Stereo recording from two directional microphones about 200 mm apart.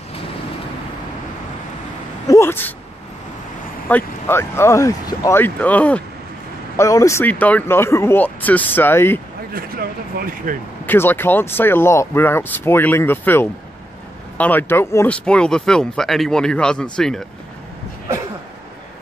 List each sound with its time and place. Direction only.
2.2 s a sound: 15° left (ahead or behind)
3.9 s speech: 10° left (ahead or behind)
9.5 s speech: 45° right (ahead or behind)
10.9 s speech: 10° left (ahead or behind)